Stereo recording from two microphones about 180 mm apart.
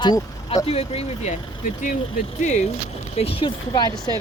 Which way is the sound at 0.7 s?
35° left (ahead or behind).